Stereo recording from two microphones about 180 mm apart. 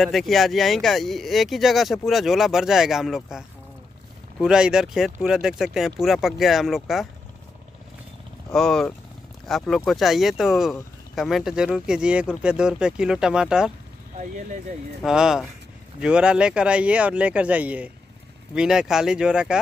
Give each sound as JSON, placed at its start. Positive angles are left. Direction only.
{"t": 0.0, "sound": "speech", "side_deg": 0}
{"t": 8.5, "sound": "speech", "side_deg": 5}
{"t": 14.1, "sound": "speech", "side_deg": -45}
{"t": 15.0, "sound": "speech", "side_deg": -5}